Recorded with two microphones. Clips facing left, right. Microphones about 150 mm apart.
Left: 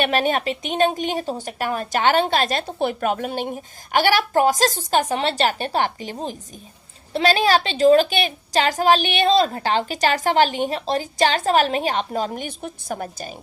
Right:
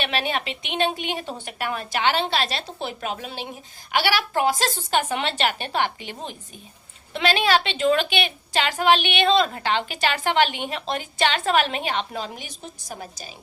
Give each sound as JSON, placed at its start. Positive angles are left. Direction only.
{"t": 0.0, "sound": "speech", "side_deg": 45}